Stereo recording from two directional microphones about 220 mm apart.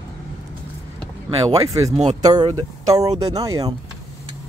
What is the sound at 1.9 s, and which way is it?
Speech, 30° right (ahead or behind).